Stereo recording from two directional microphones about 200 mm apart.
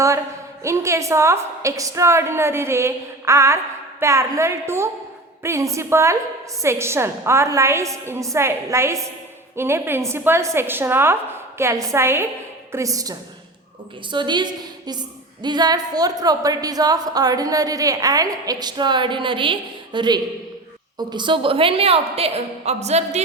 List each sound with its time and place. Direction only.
0.6 s a woman's voice: 15° right (ahead or behind); by 23.2 s 35° right (ahead or behind)